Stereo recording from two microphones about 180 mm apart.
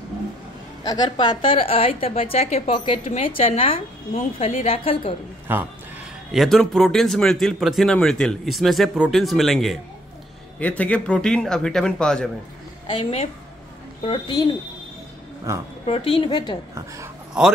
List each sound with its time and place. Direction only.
0.8 s a woman's voice: 20° left (ahead or behind)
5.5 s speech: 10° right (ahead or behind)
6.3 s a man's voice: centre (ahead or behind)
13.0 s a woman's voice: 35° left (ahead or behind)
15.5 s speech: 15° right (ahead or behind)
15.9 s a woman's voice: 30° left (ahead or behind)
16.7 s speech: 15° right (ahead or behind)